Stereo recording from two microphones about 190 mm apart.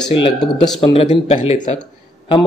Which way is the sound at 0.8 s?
25° left (ahead or behind).